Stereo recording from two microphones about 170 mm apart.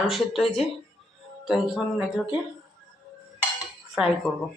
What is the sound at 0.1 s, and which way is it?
Speech, centre (ahead or behind).